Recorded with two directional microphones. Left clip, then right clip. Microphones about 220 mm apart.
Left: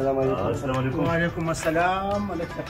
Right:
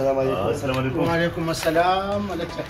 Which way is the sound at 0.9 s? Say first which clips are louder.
Right 3 dB; 5° right (ahead or behind).